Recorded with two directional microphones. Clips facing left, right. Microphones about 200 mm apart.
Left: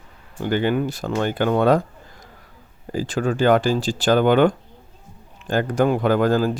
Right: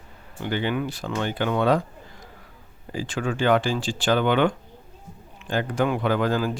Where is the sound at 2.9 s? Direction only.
40° left (ahead or behind).